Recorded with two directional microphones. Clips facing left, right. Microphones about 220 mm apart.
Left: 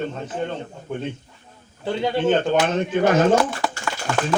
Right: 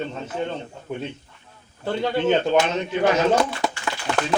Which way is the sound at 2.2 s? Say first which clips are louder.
Even; 50° left (ahead or behind).